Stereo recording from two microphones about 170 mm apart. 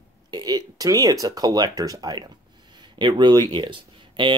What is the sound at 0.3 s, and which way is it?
Speech, 25° right (ahead or behind).